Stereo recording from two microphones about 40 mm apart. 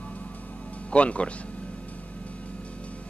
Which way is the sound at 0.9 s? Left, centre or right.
Left.